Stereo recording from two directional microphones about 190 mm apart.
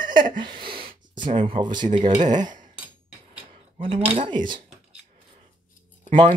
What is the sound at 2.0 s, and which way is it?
Speech, 40° right (ahead or behind).